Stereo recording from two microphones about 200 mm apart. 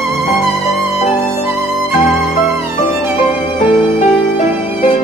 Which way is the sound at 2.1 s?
Centre (ahead or behind).